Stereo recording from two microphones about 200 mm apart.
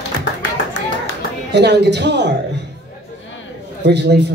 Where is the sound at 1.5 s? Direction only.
55° right (ahead or behind).